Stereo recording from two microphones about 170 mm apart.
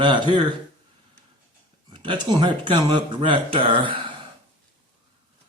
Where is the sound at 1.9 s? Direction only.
30° right (ahead or behind).